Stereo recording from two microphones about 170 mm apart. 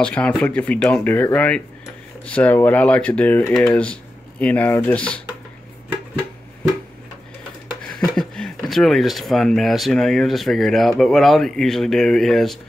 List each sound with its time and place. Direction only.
0.0 s speech: 5° left (ahead or behind)
8.0 s speech: 5° left (ahead or behind)